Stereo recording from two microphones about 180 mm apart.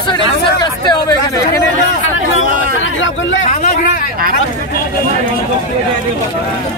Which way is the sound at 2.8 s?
90° left.